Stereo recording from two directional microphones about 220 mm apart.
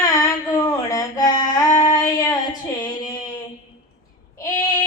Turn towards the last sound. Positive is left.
turn(degrees=15)  # may be behind; listen again after turning